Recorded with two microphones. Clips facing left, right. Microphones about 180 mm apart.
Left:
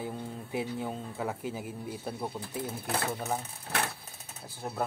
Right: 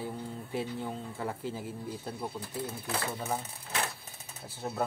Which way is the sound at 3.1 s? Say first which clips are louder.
Left 1 dB; centre (ahead or behind).